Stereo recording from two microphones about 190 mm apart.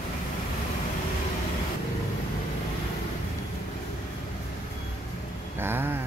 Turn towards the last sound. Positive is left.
turn(degrees=-10)  # may be behind; listen again after turning